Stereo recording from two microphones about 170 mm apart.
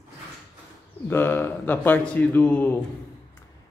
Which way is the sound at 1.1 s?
15° left (ahead or behind).